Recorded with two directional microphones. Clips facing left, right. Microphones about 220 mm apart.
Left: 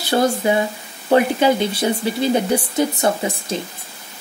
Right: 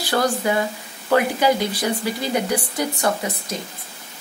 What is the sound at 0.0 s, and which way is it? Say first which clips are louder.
Speech: left 3 dB; 25° left (ahead or behind).